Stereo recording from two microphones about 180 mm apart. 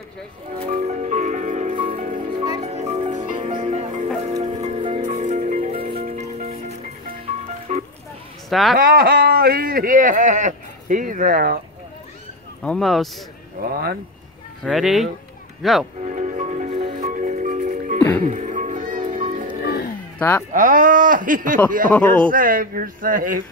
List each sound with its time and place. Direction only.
0.7 s music: 40° right (ahead or behind)
2.2 s music: 20° right (ahead or behind)
2.6 s music: 35° right (ahead or behind)
8.5 s a woman's voice: centre (ahead or behind)
8.7 s speech: 50° right (ahead or behind)
12.6 s a man's voice: centre (ahead or behind)
13.6 s speech: 60° right (ahead or behind)
14.6 s a man's voice: centre (ahead or behind)
16.0 s music: 40° right (ahead or behind)
19.6 s roaring cats: 60° left (ahead or behind)
20.2 s speech: 10° left (ahead or behind)
20.5 s speech: 45° right (ahead or behind)